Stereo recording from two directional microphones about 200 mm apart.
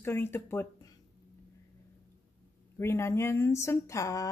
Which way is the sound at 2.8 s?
10° left (ahead or behind).